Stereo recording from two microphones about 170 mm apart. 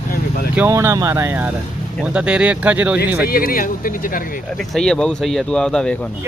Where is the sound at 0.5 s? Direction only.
15° right (ahead or behind).